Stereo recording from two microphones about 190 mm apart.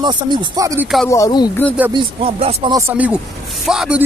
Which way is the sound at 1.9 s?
25° right (ahead or behind).